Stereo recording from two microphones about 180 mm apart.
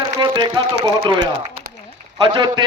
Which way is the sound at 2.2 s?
25° right (ahead or behind).